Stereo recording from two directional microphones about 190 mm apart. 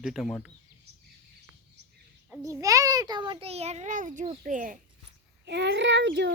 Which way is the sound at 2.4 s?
15° right (ahead or behind).